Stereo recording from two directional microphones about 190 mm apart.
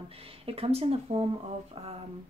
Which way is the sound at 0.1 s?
30° right (ahead or behind).